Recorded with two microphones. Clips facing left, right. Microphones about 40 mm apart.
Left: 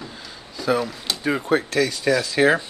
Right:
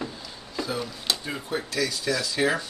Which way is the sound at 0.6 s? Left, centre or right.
Left.